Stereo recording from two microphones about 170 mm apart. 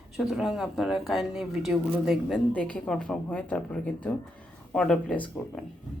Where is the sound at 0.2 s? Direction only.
Centre (ahead or behind).